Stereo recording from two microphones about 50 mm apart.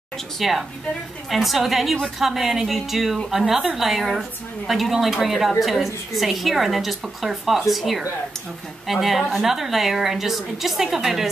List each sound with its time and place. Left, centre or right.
0.4 s a woman's voice: centre